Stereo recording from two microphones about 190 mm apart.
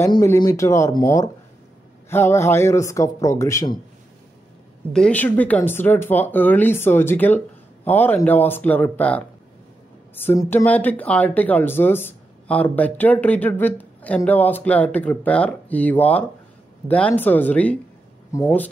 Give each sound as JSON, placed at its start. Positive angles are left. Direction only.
{"t": 0.0, "sound": "speech", "side_deg": 15}
{"t": 4.9, "sound": "speech", "side_deg": 5}